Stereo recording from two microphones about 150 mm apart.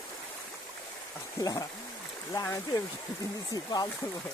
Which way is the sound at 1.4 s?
25° left (ahead or behind).